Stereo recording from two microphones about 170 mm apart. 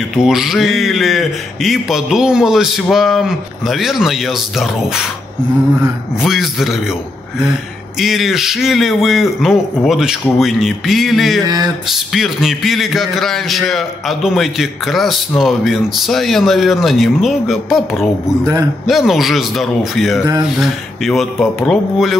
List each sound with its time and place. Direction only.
0.1 s a man's voice: centre (ahead or behind)
6.2 s a man's voice: centre (ahead or behind)
8.0 s a man's voice: centre (ahead or behind)
11.4 s a sound: 25° right (ahead or behind)
12.1 s a man's voice: centre (ahead or behind)
18.4 s a sound: 20° right (ahead or behind)
18.9 s a man's voice: centre (ahead or behind)